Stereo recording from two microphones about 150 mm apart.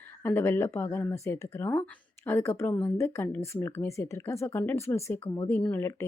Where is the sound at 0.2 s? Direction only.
15° left (ahead or behind).